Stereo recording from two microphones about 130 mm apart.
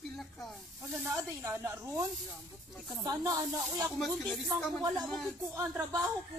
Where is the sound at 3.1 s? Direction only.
25° right (ahead or behind).